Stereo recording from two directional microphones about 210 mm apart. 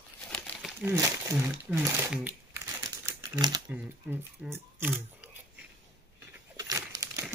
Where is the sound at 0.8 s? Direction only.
15° right (ahead or behind).